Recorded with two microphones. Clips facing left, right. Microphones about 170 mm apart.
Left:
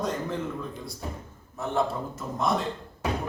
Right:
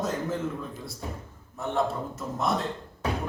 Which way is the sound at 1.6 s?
Centre (ahead or behind).